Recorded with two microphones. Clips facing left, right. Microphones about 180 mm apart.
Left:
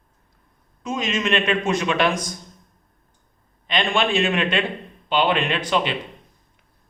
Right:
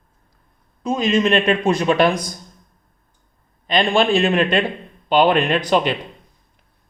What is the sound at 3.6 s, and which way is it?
A man's voice, 35° right (ahead or behind).